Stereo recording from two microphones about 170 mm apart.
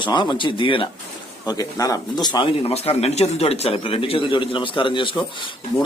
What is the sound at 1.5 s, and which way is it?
Speech, 20° left (ahead or behind).